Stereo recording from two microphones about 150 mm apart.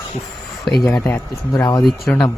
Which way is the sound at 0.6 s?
Centre (ahead or behind).